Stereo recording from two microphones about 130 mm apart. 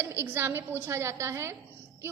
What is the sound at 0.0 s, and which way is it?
A woman's voice, 20° right (ahead or behind).